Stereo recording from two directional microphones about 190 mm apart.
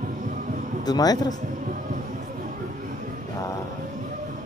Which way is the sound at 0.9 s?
20° left (ahead or behind).